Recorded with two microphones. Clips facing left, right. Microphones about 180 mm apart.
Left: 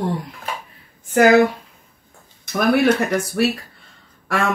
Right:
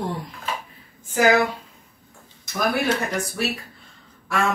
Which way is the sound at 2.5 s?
60° left (ahead or behind).